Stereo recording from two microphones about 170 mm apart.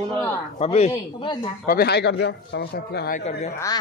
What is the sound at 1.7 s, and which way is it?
A man's voice, 70° left (ahead or behind).